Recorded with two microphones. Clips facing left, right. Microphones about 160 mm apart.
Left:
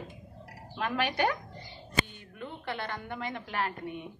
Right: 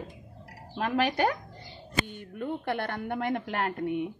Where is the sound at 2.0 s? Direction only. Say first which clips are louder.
Right 8 dB; 50° right (ahead or behind).